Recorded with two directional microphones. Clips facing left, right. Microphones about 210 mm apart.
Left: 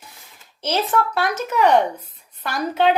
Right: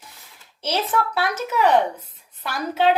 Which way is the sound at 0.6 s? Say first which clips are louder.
Left 2 dB; 45° left (ahead or behind).